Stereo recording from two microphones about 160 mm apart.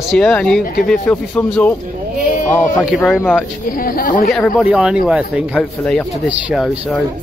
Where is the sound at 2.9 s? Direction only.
Centre (ahead or behind).